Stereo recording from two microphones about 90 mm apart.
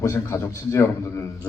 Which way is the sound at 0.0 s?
35° left (ahead or behind).